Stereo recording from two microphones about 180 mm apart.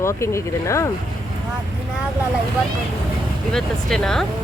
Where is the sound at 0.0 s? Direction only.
15° left (ahead or behind).